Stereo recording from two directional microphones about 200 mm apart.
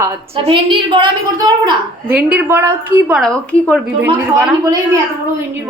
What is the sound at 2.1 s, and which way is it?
A woman's voice, 5° right (ahead or behind).